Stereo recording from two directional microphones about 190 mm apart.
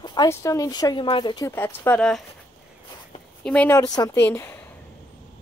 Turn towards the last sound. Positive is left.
turn(degrees=10)  # may be behind; listen again after turning